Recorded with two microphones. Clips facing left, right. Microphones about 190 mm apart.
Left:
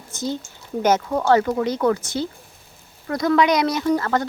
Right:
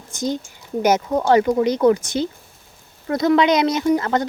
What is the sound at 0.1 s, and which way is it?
Speech, 15° right (ahead or behind).